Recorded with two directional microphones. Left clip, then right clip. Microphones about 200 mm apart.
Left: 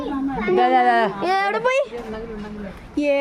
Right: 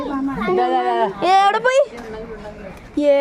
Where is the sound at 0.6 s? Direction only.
35° left (ahead or behind).